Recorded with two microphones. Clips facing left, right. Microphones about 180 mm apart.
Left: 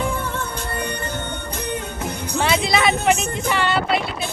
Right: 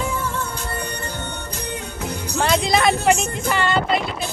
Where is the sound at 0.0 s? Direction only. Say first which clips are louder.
Left 1 dB; 55° left (ahead or behind).